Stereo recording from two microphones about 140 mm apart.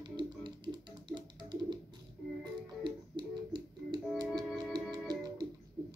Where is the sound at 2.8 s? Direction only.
30° right (ahead or behind).